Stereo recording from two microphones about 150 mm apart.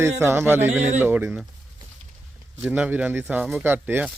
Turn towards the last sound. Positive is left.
turn(degrees=-10)  # may be behind; listen again after turning